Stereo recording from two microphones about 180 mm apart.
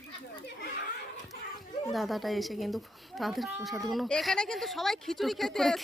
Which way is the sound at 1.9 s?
Centre (ahead or behind).